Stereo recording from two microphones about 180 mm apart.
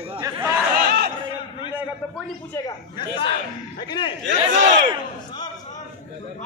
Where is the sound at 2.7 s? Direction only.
25° left (ahead or behind).